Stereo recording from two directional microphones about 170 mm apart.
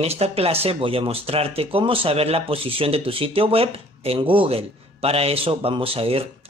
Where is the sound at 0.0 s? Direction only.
35° right (ahead or behind).